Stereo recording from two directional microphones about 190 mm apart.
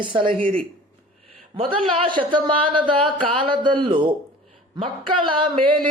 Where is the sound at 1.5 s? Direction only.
25° right (ahead or behind).